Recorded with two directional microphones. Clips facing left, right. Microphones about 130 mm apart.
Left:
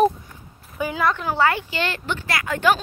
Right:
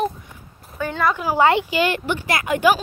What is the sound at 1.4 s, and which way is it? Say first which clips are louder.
Speech: right 5 dB; 20° right (ahead or behind).